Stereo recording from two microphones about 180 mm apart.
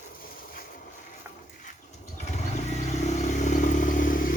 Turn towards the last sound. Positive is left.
turn(degrees=50)  # may be behind; listen again after turning